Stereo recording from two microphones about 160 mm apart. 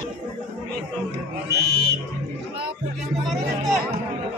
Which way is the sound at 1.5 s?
85° right.